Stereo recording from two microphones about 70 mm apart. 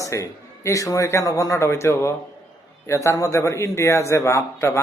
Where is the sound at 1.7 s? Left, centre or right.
Left.